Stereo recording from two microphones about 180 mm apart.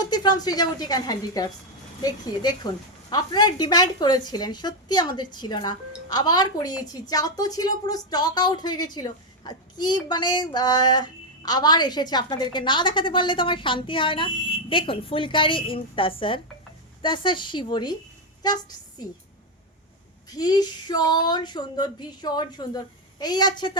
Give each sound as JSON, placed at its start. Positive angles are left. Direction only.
{"t": 0.0, "sound": "speech", "side_deg": 25}
{"t": 20.3, "sound": "speech", "side_deg": 20}